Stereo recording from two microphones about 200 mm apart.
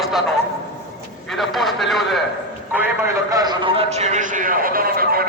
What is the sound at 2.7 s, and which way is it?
A man's voice, 10° right (ahead or behind).